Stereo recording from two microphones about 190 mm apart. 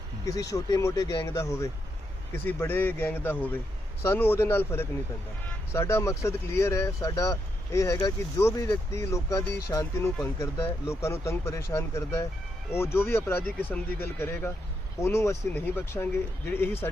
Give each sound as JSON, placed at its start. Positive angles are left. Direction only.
{"t": 0.5, "sound": "speech", "side_deg": 15}